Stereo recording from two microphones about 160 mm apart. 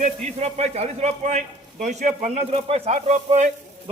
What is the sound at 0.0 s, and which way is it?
A man's voice, 45° right (ahead or behind).